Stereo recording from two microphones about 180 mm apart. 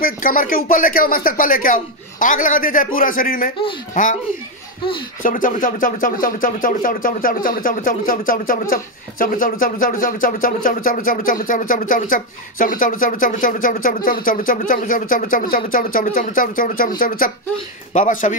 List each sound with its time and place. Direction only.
0.0 s speech: 50° left (ahead or behind)
5.2 s speech: 50° left (ahead or behind)